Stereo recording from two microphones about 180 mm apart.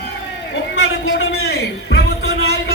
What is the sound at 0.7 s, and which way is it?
Music, 70° left (ahead or behind).